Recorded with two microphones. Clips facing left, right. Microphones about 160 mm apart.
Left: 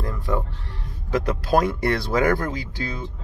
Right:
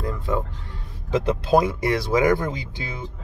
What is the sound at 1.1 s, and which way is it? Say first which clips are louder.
Speech: right 2 dB; 25° right (ahead or behind).